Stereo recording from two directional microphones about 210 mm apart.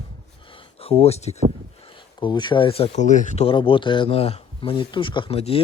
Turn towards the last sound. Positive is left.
turn(degrees=30)  # may be behind; listen again after turning